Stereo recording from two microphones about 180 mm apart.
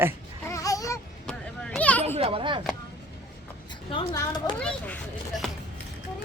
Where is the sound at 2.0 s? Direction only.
35° right (ahead or behind).